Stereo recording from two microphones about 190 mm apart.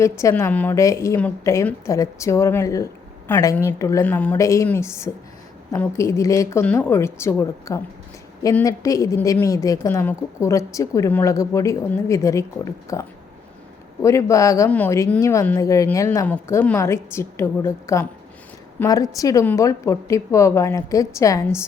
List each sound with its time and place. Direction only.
0.0 s a woman's voice: 15° left (ahead or behind)